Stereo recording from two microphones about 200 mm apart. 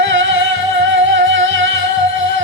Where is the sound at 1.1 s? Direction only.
70° right (ahead or behind).